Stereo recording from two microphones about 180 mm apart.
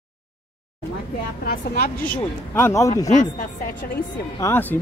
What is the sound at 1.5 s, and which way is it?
Speech, 55° left (ahead or behind).